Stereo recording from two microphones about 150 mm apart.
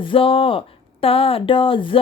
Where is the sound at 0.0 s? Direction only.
35° left (ahead or behind).